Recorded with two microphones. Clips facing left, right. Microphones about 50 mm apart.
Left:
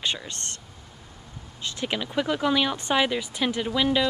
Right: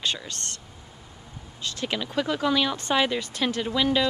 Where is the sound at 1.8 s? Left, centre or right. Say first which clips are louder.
Left 1 dB; centre.